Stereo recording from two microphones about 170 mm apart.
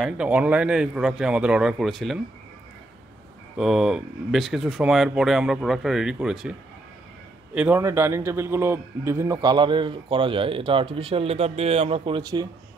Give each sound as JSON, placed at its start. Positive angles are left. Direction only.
{"t": 0.0, "sound": "speech", "side_deg": -5}
{"t": 3.5, "sound": "speech", "side_deg": -5}
{"t": 7.5, "sound": "a man's voice", "side_deg": -10}